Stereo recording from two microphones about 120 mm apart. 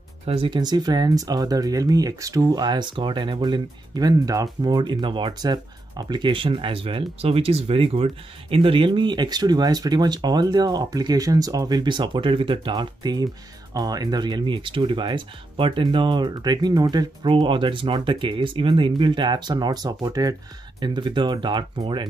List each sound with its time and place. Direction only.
0.3 s speech: 50° right (ahead or behind)
0.6 s speech: 35° right (ahead or behind)